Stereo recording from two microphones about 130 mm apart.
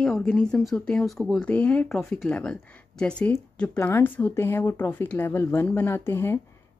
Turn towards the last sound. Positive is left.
turn(degrees=20)  # may be behind; listen again after turning